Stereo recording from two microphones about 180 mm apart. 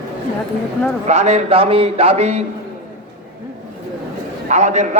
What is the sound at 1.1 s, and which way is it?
A man's voice, 40° right (ahead or behind).